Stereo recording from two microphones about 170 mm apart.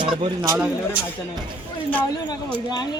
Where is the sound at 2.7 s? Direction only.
25° left (ahead or behind).